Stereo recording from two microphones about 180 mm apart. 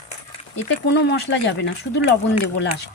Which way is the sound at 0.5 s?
80° left.